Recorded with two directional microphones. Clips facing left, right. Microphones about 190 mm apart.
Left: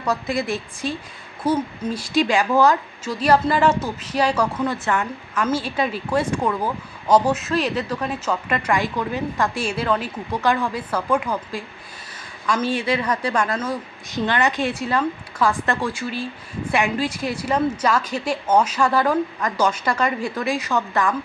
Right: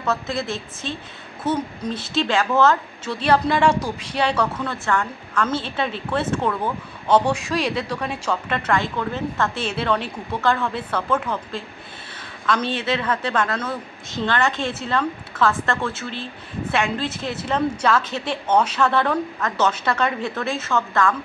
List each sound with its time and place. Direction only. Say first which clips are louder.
0.0 s a woman's voice: left 1 dB; 15° left (ahead or behind)
12.7 s a woman's voice: left 1 dB; 10° left (ahead or behind)